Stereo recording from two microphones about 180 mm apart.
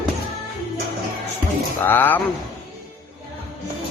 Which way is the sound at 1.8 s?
10° left (ahead or behind).